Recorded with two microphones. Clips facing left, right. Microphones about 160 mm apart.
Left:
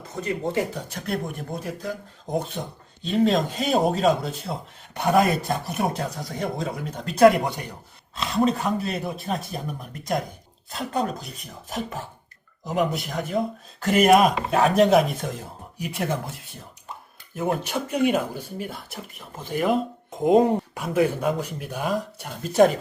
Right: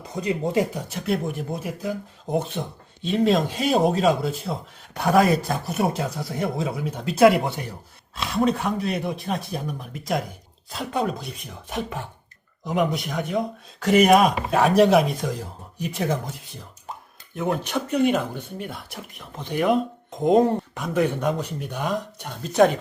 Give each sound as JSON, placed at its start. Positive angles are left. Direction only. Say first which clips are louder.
{"t": 0.2, "sound": "speech", "louder": "right 3 dB", "side_deg": -15}
{"t": 1.0, "sound": "speech", "louder": "right 4 dB", "side_deg": 0}
{"t": 17.3, "sound": "speech", "louder": "right 1 dB", "side_deg": 5}